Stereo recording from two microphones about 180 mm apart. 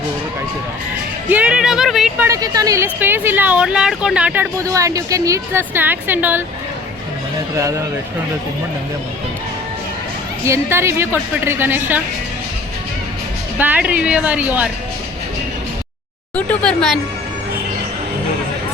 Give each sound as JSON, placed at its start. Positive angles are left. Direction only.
{"t": 1.3, "sound": "speech", "side_deg": -5}
{"t": 2.2, "sound": "a woman's voice", "side_deg": -20}
{"t": 4.5, "sound": "a woman's voice", "side_deg": -20}
{"t": 10.4, "sound": "a woman's voice", "side_deg": -15}
{"t": 13.6, "sound": "a woman's voice", "side_deg": -10}
{"t": 16.3, "sound": "speech", "side_deg": 5}